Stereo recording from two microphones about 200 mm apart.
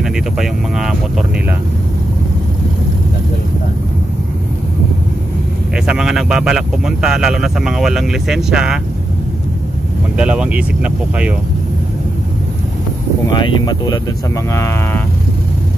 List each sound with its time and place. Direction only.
0.0 s speech: centre (ahead or behind)
5.9 s speech: centre (ahead or behind)
10.1 s speech: 5° right (ahead or behind)
13.3 s speech: 20° left (ahead or behind)